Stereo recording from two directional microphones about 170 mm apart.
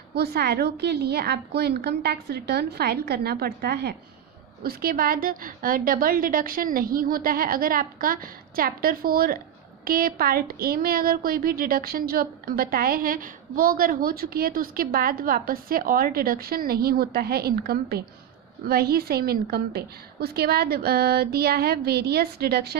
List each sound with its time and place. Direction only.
0.1 s a woman's voice: 70° right (ahead or behind)